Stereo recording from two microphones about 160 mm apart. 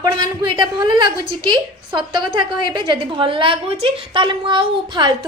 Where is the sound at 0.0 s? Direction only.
30° right (ahead or behind).